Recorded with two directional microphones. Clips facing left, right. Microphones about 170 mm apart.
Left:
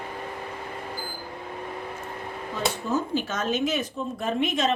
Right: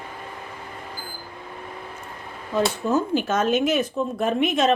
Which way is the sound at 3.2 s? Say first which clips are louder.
Right 6 dB; 55° right (ahead or behind).